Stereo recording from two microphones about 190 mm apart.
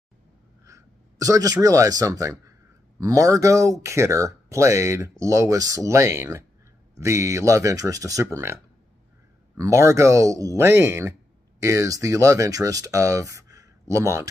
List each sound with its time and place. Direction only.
0.7 s speech: 15° right (ahead or behind)
9.6 s speech: 15° right (ahead or behind)